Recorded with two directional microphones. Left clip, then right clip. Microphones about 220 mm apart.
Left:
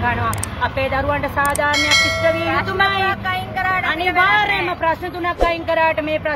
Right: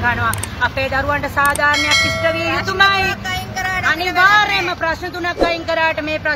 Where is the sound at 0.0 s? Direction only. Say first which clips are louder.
Right 2 dB; centre (ahead or behind).